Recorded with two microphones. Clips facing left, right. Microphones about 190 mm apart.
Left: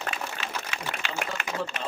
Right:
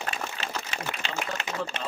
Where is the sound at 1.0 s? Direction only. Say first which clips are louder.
Left 1 dB; 30° right (ahead or behind).